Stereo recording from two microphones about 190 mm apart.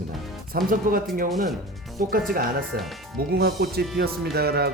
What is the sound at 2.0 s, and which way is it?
Speech, 45° right (ahead or behind).